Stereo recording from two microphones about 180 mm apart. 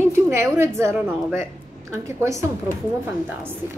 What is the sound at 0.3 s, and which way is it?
A woman's voice, 15° right (ahead or behind).